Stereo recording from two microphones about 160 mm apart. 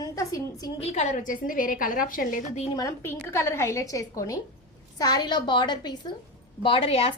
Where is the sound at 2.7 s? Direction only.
20° left (ahead or behind).